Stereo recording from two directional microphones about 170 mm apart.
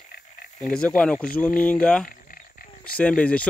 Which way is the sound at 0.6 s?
5° left (ahead or behind).